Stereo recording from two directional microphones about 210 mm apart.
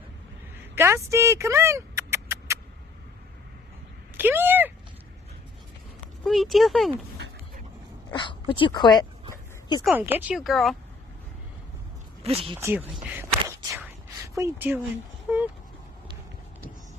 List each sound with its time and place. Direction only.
0.7 s a sound: 15° right (ahead or behind)
4.2 s a sound: 10° right (ahead or behind)
6.2 s speech: centre (ahead or behind)
8.1 s speech: 20° left (ahead or behind)
9.8 s speech: 10° right (ahead or behind)
12.2 s speech: 25° right (ahead or behind)
12.5 s speech: 10° right (ahead or behind)
12.9 s a sound: 10° right (ahead or behind)
13.6 s whispering: 15° right (ahead or behind)